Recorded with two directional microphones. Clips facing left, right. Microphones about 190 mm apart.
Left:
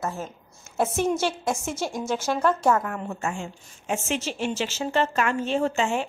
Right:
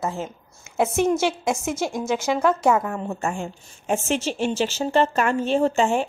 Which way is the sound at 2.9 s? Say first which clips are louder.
Right 3 dB; 30° right (ahead or behind).